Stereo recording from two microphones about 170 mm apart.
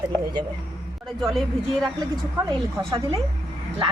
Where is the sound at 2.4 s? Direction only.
20° right (ahead or behind).